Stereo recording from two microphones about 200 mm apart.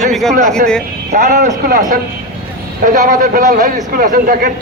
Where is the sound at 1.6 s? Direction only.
40° right (ahead or behind).